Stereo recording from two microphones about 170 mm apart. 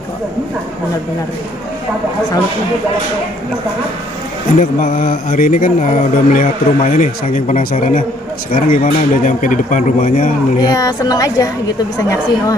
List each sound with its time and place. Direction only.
4.6 s speech: 55° left (ahead or behind)
10.7 s a woman's voice: 20° left (ahead or behind)